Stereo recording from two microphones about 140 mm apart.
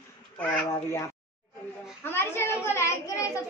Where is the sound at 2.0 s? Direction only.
15° left (ahead or behind).